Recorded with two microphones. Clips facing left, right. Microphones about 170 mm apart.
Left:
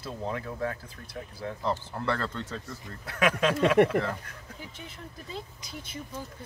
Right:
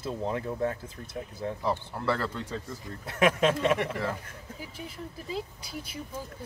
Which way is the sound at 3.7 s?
55° left (ahead or behind).